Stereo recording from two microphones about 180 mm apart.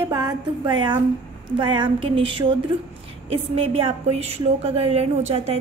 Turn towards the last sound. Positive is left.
turn(degrees=-35)  # may be behind; listen again after turning